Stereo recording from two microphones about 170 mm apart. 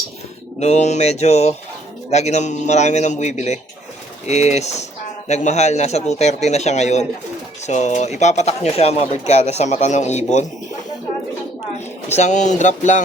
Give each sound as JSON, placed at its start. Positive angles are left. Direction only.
{"t": 0.6, "sound": "a man's voice", "side_deg": 40}
{"t": 12.0, "sound": "a man's voice", "side_deg": 40}